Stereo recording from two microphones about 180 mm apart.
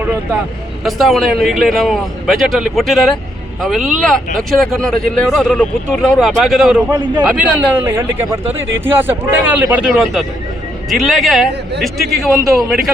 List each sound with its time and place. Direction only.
0.9 s speech: centre (ahead or behind)
6.9 s a man's voice: 25° right (ahead or behind)
7.3 s speech: 5° right (ahead or behind)